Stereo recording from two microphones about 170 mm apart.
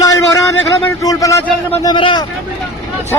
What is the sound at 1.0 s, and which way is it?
Speech, 20° left (ahead or behind).